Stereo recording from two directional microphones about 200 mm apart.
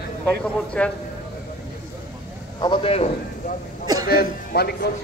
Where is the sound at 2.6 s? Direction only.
25° left (ahead or behind).